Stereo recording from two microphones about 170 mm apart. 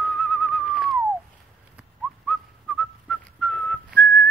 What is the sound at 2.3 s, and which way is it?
Whistling, centre (ahead or behind).